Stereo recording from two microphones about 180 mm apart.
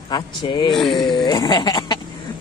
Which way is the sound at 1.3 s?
25° left (ahead or behind).